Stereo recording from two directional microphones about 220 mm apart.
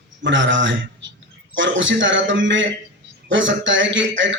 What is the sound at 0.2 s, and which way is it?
Speech, 55° right (ahead or behind).